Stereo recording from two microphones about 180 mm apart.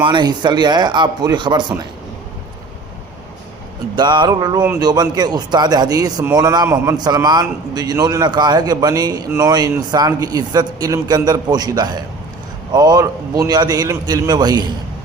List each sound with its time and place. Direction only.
0.0 s a man's voice: 25° right (ahead or behind)
3.9 s a man's voice: 25° right (ahead or behind)